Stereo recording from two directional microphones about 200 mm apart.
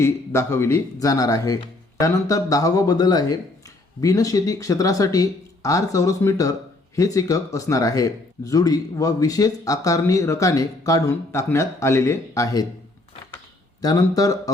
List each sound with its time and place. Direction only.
0.0 s speech: 15° left (ahead or behind)
13.8 s speech: 20° left (ahead or behind)